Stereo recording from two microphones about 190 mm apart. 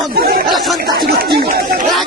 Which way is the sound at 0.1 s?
50° right (ahead or behind).